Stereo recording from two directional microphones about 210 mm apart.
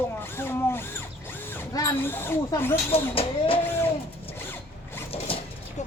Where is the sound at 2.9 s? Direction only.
25° left (ahead or behind).